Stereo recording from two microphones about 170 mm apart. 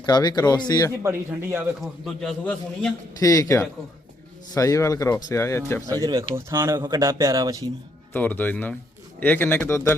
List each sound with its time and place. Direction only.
0.0 s speech: 25° left (ahead or behind)
1.0 s a man's voice: 15° right (ahead or behind)
1.8 s a man's voice: centre (ahead or behind)
3.2 s a man's voice: 20° left (ahead or behind)
6.0 s speech: 20° right (ahead or behind)
8.1 s a man's voice: 10° left (ahead or behind)